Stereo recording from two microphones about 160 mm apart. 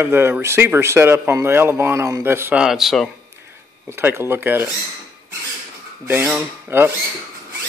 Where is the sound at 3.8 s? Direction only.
15° right (ahead or behind).